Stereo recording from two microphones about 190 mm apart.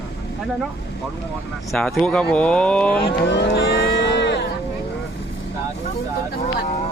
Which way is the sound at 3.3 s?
65° left (ahead or behind).